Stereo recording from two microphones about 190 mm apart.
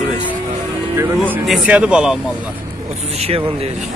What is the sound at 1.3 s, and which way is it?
Speech, 5° right (ahead or behind).